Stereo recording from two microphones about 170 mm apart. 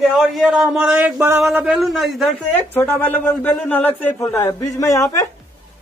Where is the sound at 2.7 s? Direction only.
10° left (ahead or behind).